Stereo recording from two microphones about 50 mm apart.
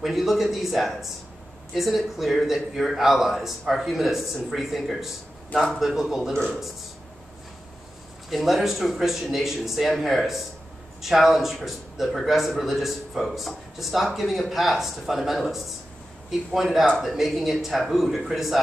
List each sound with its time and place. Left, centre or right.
0.0 s a man's voice: centre
6.3 s speech: centre
8.3 s a man's voice: centre